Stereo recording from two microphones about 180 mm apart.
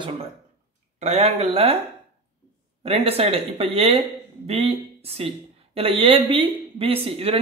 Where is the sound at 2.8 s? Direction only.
35° right (ahead or behind).